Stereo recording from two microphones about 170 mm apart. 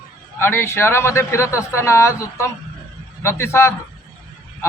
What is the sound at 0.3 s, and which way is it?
A man's voice, 15° left (ahead or behind).